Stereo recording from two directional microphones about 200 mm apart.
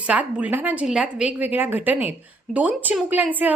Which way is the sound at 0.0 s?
5° right (ahead or behind).